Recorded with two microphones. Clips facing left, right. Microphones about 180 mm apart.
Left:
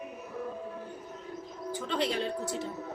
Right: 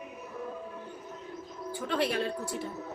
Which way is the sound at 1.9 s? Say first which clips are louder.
Right 1 dB; 20° left (ahead or behind).